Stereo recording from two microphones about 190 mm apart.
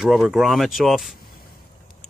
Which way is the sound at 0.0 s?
Centre (ahead or behind).